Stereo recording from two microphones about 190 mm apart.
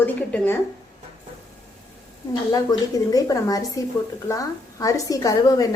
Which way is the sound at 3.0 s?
20° left (ahead or behind).